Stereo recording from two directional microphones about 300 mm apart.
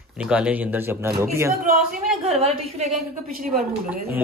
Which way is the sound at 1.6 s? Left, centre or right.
Right.